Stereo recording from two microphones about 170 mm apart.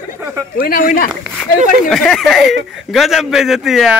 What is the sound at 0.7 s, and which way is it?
Speech, 55° left (ahead or behind).